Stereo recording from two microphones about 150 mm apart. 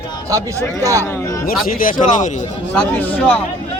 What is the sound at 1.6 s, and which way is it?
Speech, 70° left (ahead or behind).